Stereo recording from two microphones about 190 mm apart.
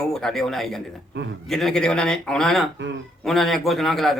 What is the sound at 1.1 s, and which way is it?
Speech, 65° right (ahead or behind).